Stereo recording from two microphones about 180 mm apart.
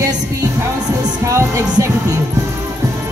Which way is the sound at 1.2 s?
15° right (ahead or behind).